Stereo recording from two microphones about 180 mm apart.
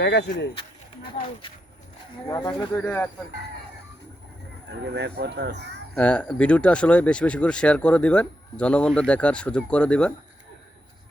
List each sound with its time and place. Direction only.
0.0 s speech: 70° left (ahead or behind)
1.0 s speech: 30° left (ahead or behind)
2.8 s speech: 10° left (ahead or behind)
4.7 s speech: 70° right (ahead or behind)
5.9 s speech: 5° left (ahead or behind)